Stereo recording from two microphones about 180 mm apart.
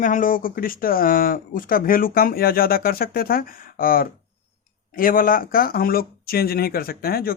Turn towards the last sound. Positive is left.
turn(degrees=55)  # may be behind; listen again after turning